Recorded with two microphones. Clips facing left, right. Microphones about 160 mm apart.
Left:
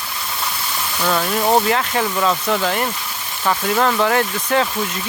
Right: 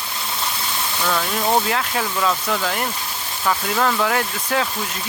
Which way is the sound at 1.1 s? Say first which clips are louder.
Left 4 dB; 20° left (ahead or behind).